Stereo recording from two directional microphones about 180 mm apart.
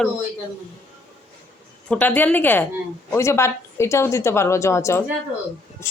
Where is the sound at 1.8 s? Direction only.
5° left (ahead or behind).